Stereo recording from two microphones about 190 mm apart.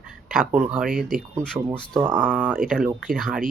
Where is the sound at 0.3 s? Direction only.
5° right (ahead or behind).